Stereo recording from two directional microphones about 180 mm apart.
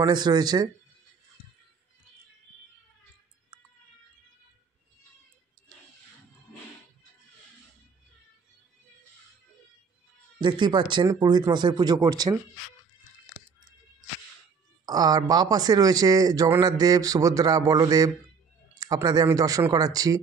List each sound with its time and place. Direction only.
0.0 s speech: 20° right (ahead or behind)
10.4 s speech: 25° right (ahead or behind)
14.9 s speech: 20° right (ahead or behind)